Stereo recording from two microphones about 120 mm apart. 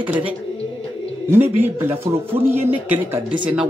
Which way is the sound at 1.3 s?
20° right (ahead or behind).